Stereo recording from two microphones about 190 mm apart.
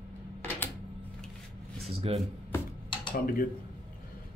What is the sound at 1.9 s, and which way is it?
Speech, 30° right (ahead or behind).